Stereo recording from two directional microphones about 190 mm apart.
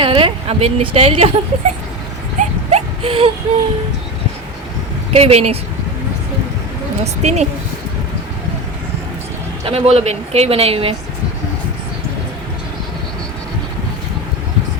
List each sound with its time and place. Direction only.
0.0 s a woman's voice: 25° right (ahead or behind)
2.4 s a sound: 35° right (ahead or behind)
5.1 s speech: 30° right (ahead or behind)
7.0 s speech: 35° right (ahead or behind)
9.6 s speech: 30° right (ahead or behind)